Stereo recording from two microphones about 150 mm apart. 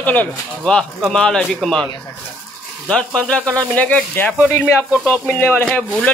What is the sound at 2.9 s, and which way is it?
Speech, 5° left (ahead or behind).